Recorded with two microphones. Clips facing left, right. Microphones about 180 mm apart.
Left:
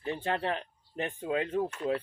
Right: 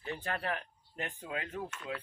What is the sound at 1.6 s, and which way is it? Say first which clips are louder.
Speech: left 10 dB; 35° left (ahead or behind).